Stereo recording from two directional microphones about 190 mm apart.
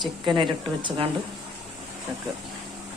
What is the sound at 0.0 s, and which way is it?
Speech, 25° right (ahead or behind).